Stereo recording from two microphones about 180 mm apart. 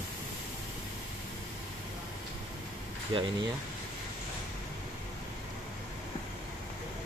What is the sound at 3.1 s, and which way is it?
Speech, 25° right (ahead or behind).